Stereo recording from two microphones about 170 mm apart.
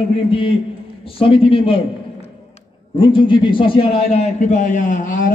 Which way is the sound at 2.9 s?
30° left (ahead or behind).